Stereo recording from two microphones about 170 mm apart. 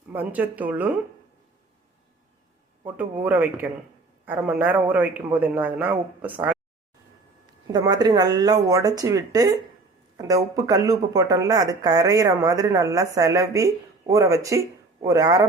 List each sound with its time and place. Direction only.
0.1 s a man's voice: 10° right (ahead or behind)
3.2 s a man's voice: 10° right (ahead or behind)
7.7 s speech: 25° right (ahead or behind)